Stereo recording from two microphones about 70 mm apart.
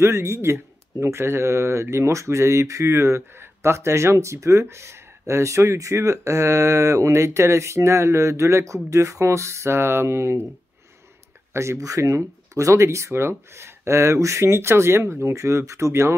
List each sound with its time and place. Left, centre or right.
0.0 s speech: right
11.5 s speech: right